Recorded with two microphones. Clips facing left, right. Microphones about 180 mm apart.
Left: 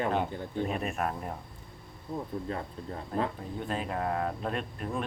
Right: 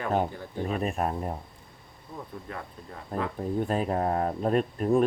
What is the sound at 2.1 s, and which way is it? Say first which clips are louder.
Speech: left 5 dB; 30° left (ahead or behind).